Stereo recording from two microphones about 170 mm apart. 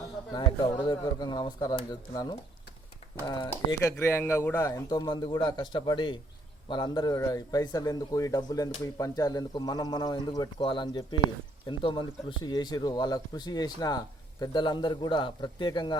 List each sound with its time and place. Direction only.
0.3 s a man's voice: 25° left (ahead or behind)